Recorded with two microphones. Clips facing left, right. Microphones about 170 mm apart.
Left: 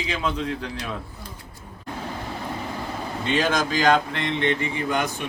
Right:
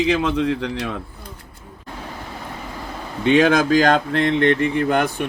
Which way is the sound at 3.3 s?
60° right (ahead or behind).